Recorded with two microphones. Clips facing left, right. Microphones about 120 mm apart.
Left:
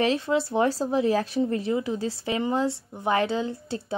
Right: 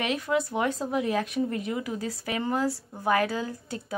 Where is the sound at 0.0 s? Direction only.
30° left (ahead or behind).